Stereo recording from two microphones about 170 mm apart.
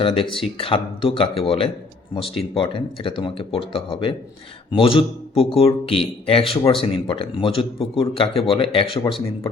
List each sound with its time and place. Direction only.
0.0 s speech: 30° left (ahead or behind)